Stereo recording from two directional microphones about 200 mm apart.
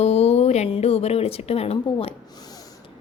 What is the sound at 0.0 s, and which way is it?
Speech, 30° left (ahead or behind).